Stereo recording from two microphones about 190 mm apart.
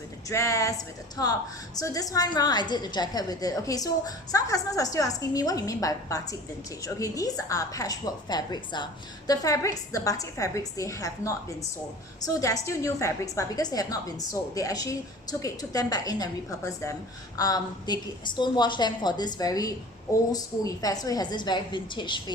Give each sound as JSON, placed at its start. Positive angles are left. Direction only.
{"t": 0.3, "sound": "a woman's voice", "side_deg": 15}